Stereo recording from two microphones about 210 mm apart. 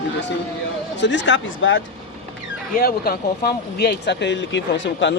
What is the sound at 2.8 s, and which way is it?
Speech, 45° left (ahead or behind).